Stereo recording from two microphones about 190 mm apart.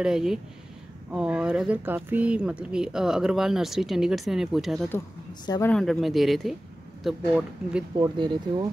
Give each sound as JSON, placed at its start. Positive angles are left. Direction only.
{"t": 0.0, "sound": "speech", "side_deg": 0}
{"t": 8.0, "sound": "speech", "side_deg": -25}